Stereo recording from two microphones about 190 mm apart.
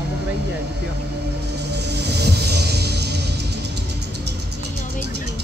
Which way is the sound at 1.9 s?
60° right (ahead or behind).